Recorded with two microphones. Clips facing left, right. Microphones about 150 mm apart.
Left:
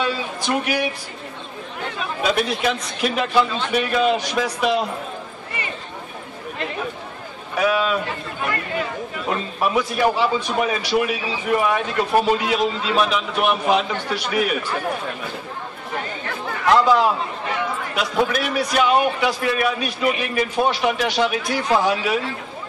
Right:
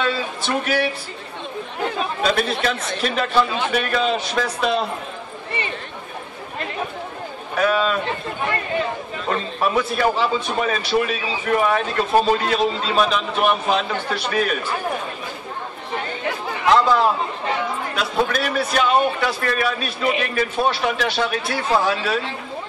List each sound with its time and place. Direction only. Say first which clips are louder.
0.0 s speech: right 1 dB; 15° left (ahead or behind)
2.2 s a man's voice: left 1 dB; 15° left (ahead or behind)
7.5 s a man's voice: even; 10° left (ahead or behind)
9.6 s a man's voice: left 1 dB; 10° left (ahead or behind)
16.8 s a man's voice: left 1 dB; 15° left (ahead or behind)